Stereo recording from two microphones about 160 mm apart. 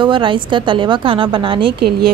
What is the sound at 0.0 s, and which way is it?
A woman's voice, 30° right (ahead or behind).